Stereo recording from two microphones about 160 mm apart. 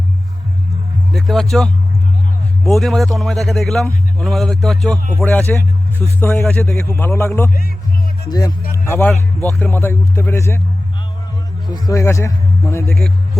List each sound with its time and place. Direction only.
1.1 s a man's voice: centre (ahead or behind); by 8.5 s 25° left (ahead or behind)
8.7 s a sound: 15° left (ahead or behind)
9.6 s speech: 15° left (ahead or behind)
11.7 s speech: 20° left (ahead or behind)
12.9 s speech: centre (ahead or behind)